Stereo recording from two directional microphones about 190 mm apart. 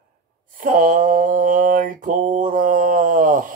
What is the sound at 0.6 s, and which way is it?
Mantra, 45° right (ahead or behind).